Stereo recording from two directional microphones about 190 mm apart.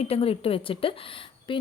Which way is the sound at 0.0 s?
30° left (ahead or behind).